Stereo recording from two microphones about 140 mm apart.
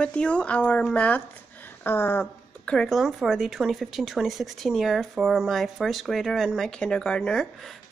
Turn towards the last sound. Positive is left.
turn(degrees=5)  # may be behind; listen again after turning